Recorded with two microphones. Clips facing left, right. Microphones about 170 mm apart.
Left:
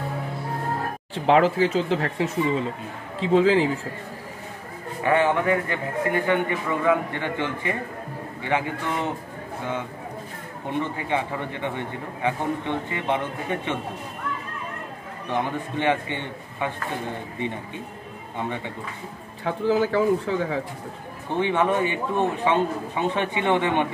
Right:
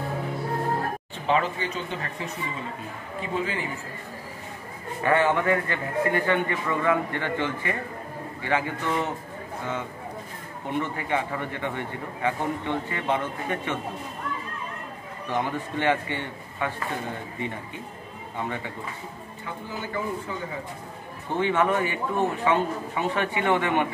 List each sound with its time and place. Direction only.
1.1 s speech: 90° left
5.0 s a man's voice: 15° left (ahead or behind)
10.7 s a man's voice: 20° left (ahead or behind)
15.2 s a man's voice: 15° left (ahead or behind)
18.4 s a man's voice: 20° left (ahead or behind)
19.4 s speech: 90° left
21.3 s a man's voice: 20° left (ahead or behind)